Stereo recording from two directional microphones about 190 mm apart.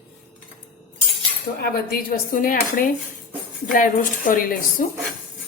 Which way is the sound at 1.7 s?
50° left (ahead or behind).